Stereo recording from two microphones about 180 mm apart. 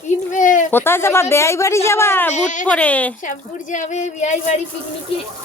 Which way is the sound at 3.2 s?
45° left (ahead or behind).